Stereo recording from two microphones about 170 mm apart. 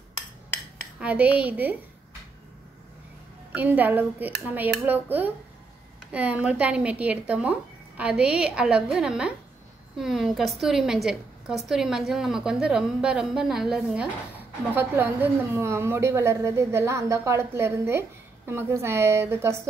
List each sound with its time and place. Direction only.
0.9 s a woman's voice: 10° right (ahead or behind)
3.5 s a woman's voice: 10° right (ahead or behind)